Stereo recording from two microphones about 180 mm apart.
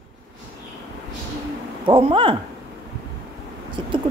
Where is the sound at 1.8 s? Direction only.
30° right (ahead or behind).